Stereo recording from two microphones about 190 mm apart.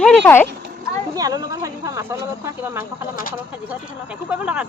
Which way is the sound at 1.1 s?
20° right (ahead or behind).